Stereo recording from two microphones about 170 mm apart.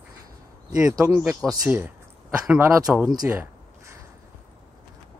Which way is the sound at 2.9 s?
5° right (ahead or behind).